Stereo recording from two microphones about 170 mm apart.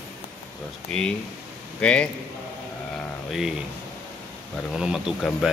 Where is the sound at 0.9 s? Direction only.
5° left (ahead or behind).